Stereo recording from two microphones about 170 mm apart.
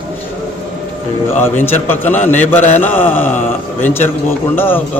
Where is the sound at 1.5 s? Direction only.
10° left (ahead or behind).